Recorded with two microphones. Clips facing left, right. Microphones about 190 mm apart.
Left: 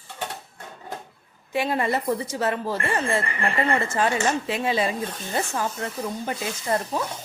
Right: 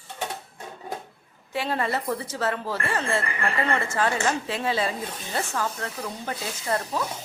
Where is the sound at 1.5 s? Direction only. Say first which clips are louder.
Left 3 dB; 15° left (ahead or behind).